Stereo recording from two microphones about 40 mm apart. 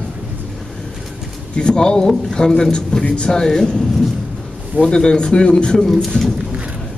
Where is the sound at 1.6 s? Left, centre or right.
Left.